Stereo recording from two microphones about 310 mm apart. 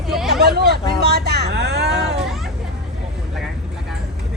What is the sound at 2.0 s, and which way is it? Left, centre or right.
Hubbub, centre.